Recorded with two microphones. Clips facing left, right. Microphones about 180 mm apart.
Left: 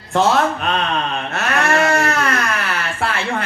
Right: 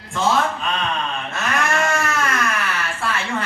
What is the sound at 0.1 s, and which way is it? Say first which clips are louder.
Speech: left 4 dB; 65° left (ahead or behind).